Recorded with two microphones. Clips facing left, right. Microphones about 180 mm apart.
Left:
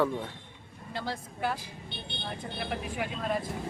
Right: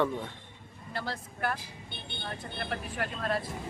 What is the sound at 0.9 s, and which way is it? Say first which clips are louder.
Speech: left 1 dB; 15° left (ahead or behind).